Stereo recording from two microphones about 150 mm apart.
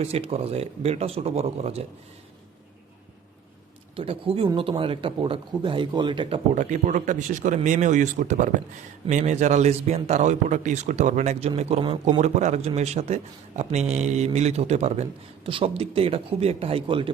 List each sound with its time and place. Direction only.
0.0 s a man's voice: 40° right (ahead or behind)
3.9 s a man's voice: 40° right (ahead or behind)
6.5 s a man's voice: 55° right (ahead or behind); by 17.1 s 35° right (ahead or behind)